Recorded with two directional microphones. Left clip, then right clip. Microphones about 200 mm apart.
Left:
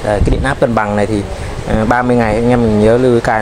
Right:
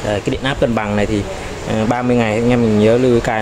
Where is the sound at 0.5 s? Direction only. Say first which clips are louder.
Left 4 dB; 5° left (ahead or behind).